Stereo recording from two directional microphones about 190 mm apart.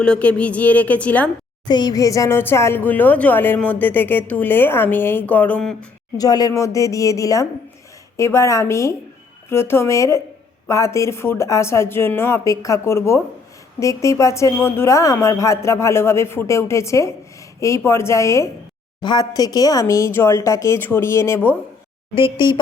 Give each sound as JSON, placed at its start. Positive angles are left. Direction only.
{"t": 0.0, "sound": "speech", "side_deg": 5}
{"t": 1.6, "sound": "speech", "side_deg": 20}
{"t": 6.1, "sound": "speech", "side_deg": 20}
{"t": 22.1, "sound": "speech", "side_deg": 25}